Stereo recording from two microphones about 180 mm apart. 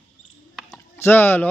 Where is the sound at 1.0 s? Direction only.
10° left (ahead or behind).